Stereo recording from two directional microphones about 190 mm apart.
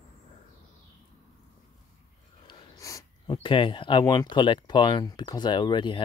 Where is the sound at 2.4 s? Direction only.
20° left (ahead or behind).